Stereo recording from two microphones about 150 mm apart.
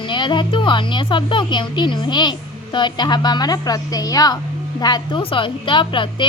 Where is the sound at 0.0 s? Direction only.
35° left (ahead or behind).